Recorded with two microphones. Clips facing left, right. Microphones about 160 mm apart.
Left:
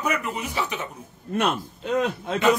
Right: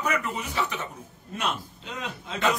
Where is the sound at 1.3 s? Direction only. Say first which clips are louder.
Left 7 dB; 55° left (ahead or behind).